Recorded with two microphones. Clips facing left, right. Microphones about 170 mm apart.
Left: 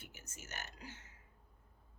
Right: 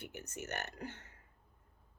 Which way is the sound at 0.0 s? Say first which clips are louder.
Right 10 dB; 60° right (ahead or behind).